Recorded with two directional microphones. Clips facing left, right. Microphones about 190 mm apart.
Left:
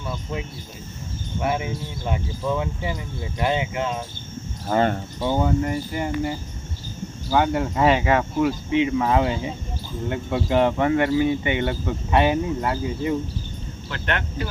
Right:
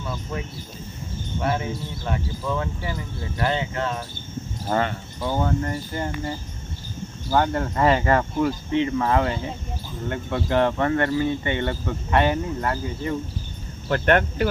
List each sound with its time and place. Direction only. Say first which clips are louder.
1.4 s speech: left 1 dB; 15° left (ahead or behind)
4.7 s speech: left 3 dB; 5° left (ahead or behind)
13.8 s speech: right 9 dB; 45° right (ahead or behind)